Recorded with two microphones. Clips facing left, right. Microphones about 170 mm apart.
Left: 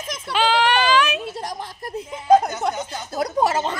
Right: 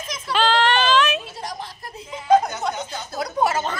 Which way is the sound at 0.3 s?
10° left (ahead or behind).